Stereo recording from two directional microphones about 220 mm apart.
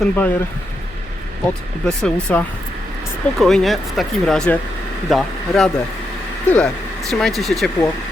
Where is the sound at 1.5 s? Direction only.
5° left (ahead or behind).